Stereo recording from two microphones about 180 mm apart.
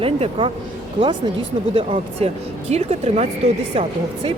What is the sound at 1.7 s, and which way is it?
Speech, 35° right (ahead or behind).